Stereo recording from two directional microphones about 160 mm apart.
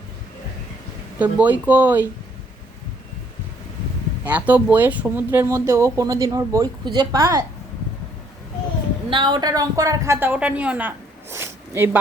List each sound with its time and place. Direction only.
1.2 s speech: 10° right (ahead or behind)
4.3 s speech: 10° right (ahead or behind)
9.0 s a woman's voice: 30° right (ahead or behind)